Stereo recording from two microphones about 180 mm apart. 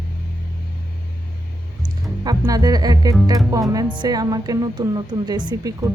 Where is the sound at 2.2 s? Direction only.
20° right (ahead or behind).